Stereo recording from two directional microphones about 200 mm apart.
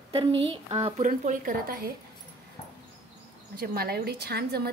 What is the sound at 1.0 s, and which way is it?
Speech, 40° right (ahead or behind).